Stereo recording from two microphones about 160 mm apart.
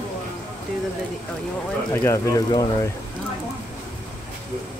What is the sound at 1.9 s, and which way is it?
Speech, 15° left (ahead or behind).